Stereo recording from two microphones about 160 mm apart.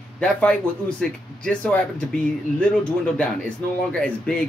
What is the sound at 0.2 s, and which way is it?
Speech, 5° left (ahead or behind).